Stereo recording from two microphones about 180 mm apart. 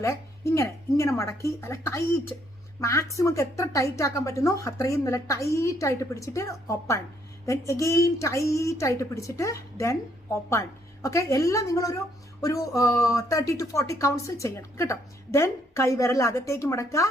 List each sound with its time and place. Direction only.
0.5 s a woman's voice: 15° left (ahead or behind)